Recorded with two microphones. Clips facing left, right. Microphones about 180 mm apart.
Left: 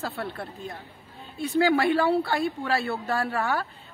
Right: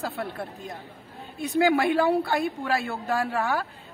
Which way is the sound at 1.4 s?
15° right (ahead or behind).